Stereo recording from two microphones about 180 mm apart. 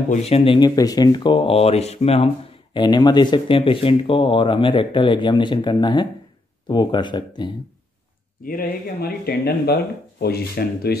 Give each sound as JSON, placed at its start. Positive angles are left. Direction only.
{"t": 0.1, "sound": "speech", "side_deg": 35}
{"t": 8.5, "sound": "speech", "side_deg": 55}